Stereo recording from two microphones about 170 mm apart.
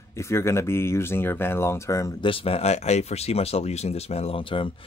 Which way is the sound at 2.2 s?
35° left (ahead or behind).